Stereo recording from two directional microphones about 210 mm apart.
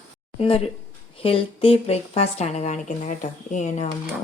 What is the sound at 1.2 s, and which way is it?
Speech, 25° left (ahead or behind).